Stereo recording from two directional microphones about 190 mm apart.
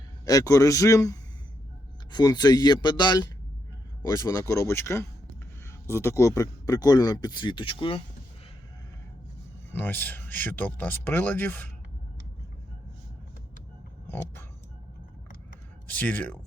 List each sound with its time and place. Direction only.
0.3 s speech: 20° left (ahead or behind)
9.7 s speech: 10° left (ahead or behind)
14.1 s speech: 10° left (ahead or behind)
15.9 s speech: 10° left (ahead or behind)